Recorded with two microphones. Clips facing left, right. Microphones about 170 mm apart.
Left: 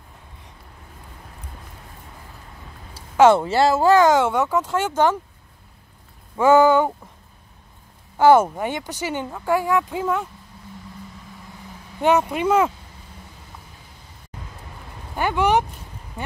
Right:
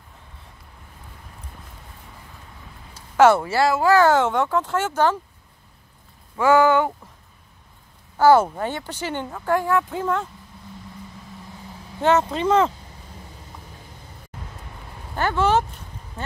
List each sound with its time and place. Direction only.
3.2 s speech: 15° left (ahead or behind)
6.3 s speech: 20° left (ahead or behind)
8.4 s speech: 10° left (ahead or behind)
12.0 s speech: 10° left (ahead or behind)
15.1 s speech: 15° left (ahead or behind)